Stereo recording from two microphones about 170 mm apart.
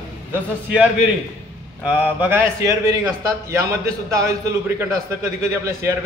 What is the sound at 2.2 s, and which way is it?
A man's voice, 10° right (ahead or behind).